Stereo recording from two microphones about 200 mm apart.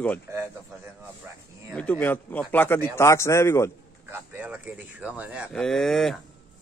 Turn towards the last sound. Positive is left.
turn(degrees=0)  # may be behind; listen again after turning